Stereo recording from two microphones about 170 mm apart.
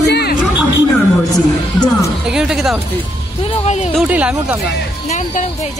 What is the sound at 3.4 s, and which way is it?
Speech, 35° left (ahead or behind).